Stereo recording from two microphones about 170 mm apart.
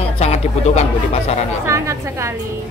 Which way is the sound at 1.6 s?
15° right (ahead or behind).